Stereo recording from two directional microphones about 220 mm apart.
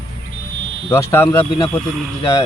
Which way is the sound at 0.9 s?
10° left (ahead or behind).